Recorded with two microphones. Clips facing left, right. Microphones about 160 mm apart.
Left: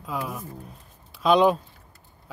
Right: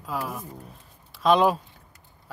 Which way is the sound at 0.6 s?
Centre (ahead or behind).